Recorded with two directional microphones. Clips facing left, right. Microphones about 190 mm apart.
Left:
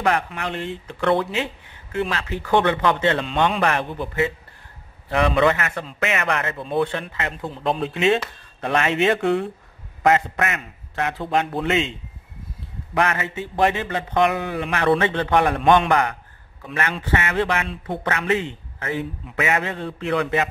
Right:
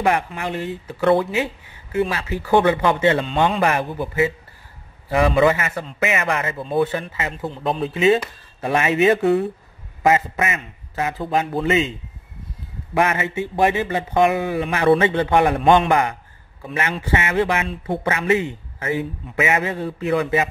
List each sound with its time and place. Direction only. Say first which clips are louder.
0.0 s a man's voice: right 2 dB; 10° right (ahead or behind)
12.9 s speech: right 3 dB; 15° right (ahead or behind)